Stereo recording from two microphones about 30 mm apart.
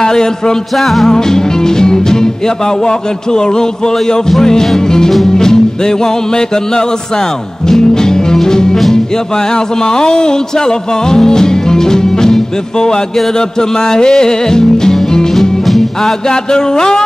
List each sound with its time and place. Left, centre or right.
0.0 s music: left
0.7 s music: centre
1.0 s music: centre
15.6 s music: centre
16.3 s music: left